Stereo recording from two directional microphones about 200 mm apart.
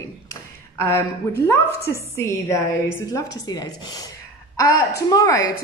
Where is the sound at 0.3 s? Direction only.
10° left (ahead or behind).